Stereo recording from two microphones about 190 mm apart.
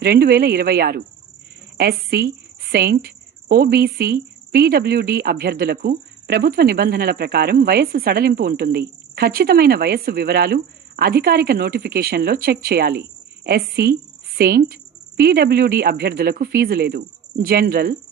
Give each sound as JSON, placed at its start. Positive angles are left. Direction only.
{"t": 0.0, "sound": "a woman's voice", "side_deg": -55}